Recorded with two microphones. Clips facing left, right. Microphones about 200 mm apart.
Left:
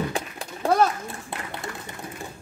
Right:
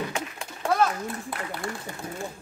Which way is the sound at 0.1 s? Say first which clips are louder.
Left 2 dB; 35° left (ahead or behind).